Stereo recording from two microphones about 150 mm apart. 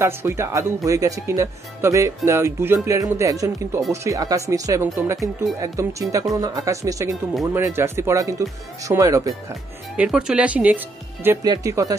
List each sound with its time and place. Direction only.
0.0 s speech: 15° right (ahead or behind)
9.9 s speech: 5° right (ahead or behind)
11.4 s speech: 25° right (ahead or behind)